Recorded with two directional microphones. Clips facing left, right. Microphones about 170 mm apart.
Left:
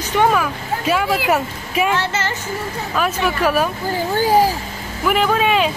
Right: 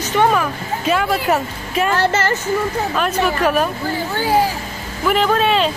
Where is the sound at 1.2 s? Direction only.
10° left (ahead or behind).